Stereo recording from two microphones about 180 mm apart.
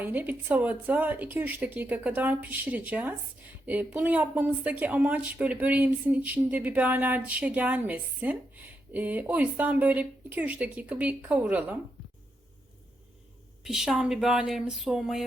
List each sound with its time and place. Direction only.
0.0 s speech: 10° right (ahead or behind)
13.7 s speech: centre (ahead or behind)